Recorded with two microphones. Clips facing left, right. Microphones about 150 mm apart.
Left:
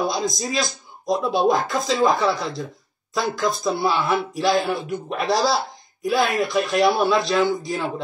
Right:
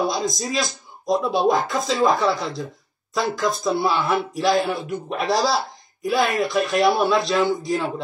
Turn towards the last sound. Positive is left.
turn(degrees=0)  # may be behind; listen again after turning